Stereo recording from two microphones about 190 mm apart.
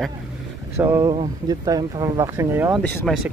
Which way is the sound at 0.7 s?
15° right (ahead or behind).